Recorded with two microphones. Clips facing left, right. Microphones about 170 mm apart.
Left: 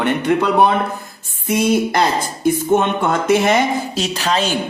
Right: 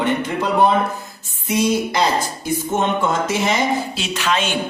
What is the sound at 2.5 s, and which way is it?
A man's voice, 60° left (ahead or behind).